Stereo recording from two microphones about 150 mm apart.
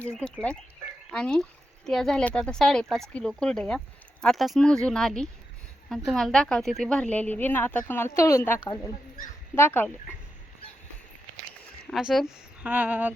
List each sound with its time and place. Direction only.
1.1 s a woman's voice: 5° left (ahead or behind)
11.9 s a woman's voice: centre (ahead or behind)